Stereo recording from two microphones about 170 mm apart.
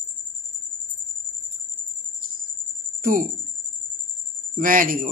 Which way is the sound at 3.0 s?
55° right (ahead or behind).